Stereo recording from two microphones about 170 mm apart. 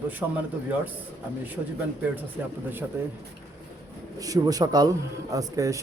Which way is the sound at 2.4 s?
10° right (ahead or behind).